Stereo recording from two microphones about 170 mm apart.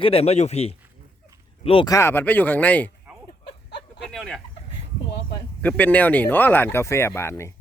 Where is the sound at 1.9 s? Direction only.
15° left (ahead or behind).